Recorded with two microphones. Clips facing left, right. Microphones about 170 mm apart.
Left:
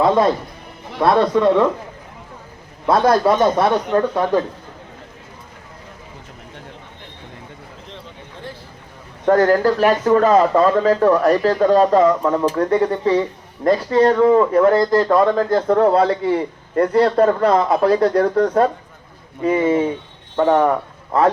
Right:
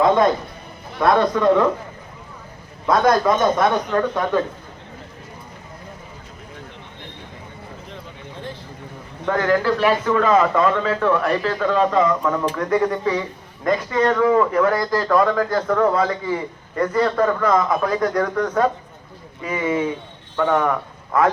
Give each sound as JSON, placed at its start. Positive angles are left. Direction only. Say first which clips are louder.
{"t": 0.0, "sound": "a man's voice", "louder": "left 1 dB", "side_deg": 30}
{"t": 2.8, "sound": "speech", "louder": "left 2 dB", "side_deg": 30}
{"t": 9.2, "sound": "a man's voice", "louder": "left 5 dB", "side_deg": 40}
{"t": 16.0, "sound": "a man's voice", "louder": "left 5 dB", "side_deg": 65}
{"t": 17.2, "sound": "a man's voice", "louder": "left 3 dB", "side_deg": 35}